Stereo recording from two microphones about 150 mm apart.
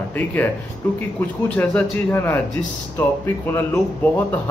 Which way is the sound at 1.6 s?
10° left (ahead or behind).